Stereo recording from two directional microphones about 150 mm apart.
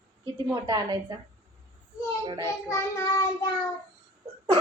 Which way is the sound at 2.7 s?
20° left (ahead or behind).